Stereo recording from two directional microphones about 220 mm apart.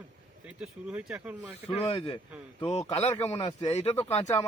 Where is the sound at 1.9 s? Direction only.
20° left (ahead or behind).